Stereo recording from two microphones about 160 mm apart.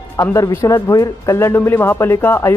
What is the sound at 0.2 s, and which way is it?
Speech, 20° left (ahead or behind).